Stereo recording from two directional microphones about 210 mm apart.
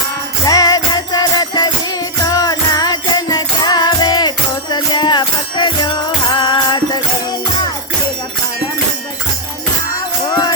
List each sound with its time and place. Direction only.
0.4 s music: 20° left (ahead or behind)